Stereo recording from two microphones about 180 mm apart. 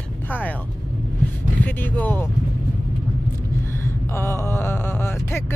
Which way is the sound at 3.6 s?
15° left (ahead or behind).